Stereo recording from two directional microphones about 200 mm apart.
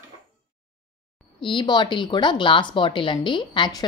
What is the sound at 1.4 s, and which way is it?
Speech, 25° left (ahead or behind).